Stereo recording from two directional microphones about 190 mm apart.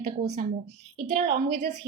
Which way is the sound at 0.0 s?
55° right (ahead or behind).